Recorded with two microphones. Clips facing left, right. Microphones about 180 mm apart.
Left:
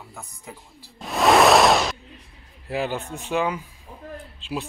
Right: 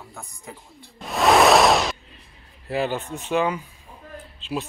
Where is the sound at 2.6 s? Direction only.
10° left (ahead or behind).